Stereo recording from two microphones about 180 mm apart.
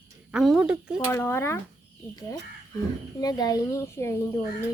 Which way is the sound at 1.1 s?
15° left (ahead or behind).